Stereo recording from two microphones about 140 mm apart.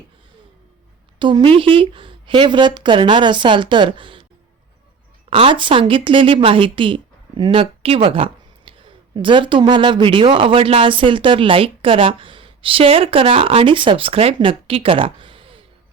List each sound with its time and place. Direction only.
1.2 s a woman's voice: 35° right (ahead or behind)
5.3 s a woman's voice: 40° right (ahead or behind)